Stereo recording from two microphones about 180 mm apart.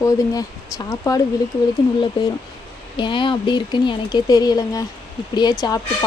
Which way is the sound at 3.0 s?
25° left (ahead or behind).